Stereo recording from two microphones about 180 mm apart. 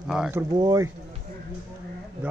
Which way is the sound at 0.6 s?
20° right (ahead or behind).